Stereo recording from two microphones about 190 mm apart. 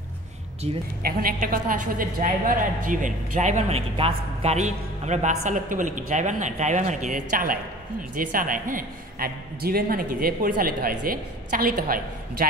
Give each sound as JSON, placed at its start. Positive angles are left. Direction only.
{"t": 0.7, "sound": "a woman's voice", "side_deg": -30}
{"t": 1.0, "sound": "a woman's voice", "side_deg": -50}